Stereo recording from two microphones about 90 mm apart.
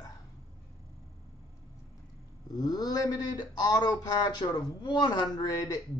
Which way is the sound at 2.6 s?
45° left (ahead or behind).